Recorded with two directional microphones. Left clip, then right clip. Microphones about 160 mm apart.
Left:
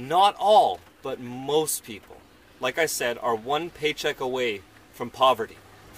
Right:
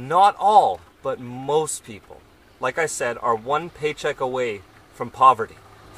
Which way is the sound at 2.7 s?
45° left (ahead or behind).